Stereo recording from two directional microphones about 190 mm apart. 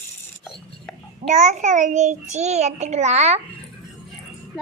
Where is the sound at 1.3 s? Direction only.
40° right (ahead or behind).